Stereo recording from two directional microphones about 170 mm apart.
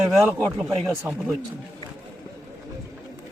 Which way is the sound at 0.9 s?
15° right (ahead or behind).